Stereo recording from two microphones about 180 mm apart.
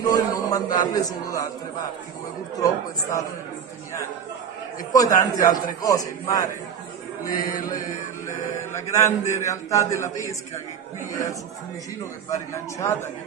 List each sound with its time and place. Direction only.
0.0 s a man's voice: 20° left (ahead or behind)
4.9 s a man's voice: 20° left (ahead or behind)
8.3 s a man's voice: 15° left (ahead or behind)